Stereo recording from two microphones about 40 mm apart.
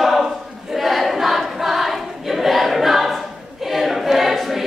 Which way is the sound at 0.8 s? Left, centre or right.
Centre.